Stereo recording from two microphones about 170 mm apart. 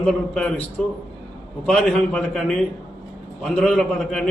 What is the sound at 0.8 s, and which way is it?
A man's voice, 5° left (ahead or behind).